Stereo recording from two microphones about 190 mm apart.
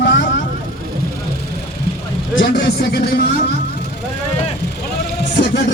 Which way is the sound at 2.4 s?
60° left (ahead or behind).